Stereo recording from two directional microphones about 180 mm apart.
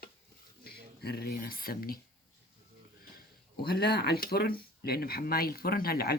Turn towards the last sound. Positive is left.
turn(degrees=60)  # may be behind; listen again after turning